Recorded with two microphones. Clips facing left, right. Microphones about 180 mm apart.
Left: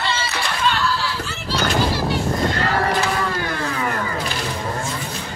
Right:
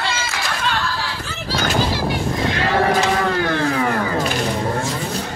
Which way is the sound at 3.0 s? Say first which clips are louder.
Right 4 dB; 65° right (ahead or behind).